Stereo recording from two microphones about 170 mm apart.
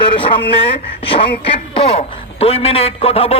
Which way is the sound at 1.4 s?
35° left (ahead or behind).